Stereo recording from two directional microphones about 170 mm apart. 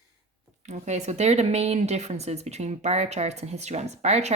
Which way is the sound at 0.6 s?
45° right (ahead or behind).